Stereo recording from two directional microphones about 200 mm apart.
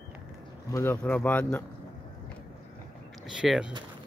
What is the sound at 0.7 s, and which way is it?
Speech, 15° left (ahead or behind).